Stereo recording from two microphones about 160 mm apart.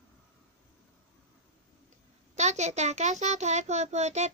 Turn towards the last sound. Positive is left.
turn(degrees=-45)  # may be behind; listen again after turning